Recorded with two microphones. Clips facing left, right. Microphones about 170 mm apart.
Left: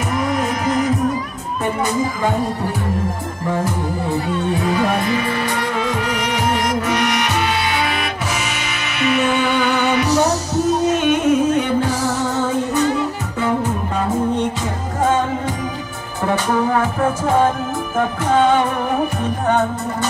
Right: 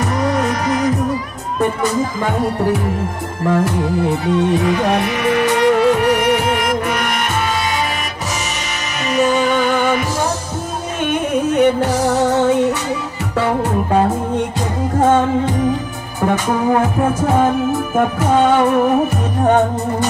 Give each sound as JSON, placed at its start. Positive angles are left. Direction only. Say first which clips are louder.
{"t": 4.6, "sound": "music", "louder": "right 2 dB", "side_deg": -75}
{"t": 9.0, "sound": "music", "louder": "right 2 dB", "side_deg": -40}
{"t": 12.3, "sound": "music", "louder": "right 6 dB", "side_deg": -70}